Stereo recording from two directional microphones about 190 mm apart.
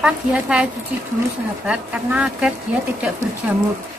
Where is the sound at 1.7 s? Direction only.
5° right (ahead or behind).